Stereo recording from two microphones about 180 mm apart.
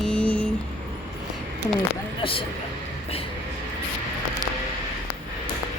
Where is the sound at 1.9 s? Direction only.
30° left (ahead or behind).